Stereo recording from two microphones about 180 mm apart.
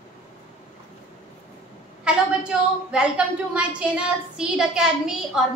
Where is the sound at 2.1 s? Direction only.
5° right (ahead or behind).